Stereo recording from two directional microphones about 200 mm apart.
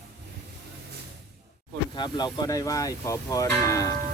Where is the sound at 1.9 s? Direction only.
25° left (ahead or behind).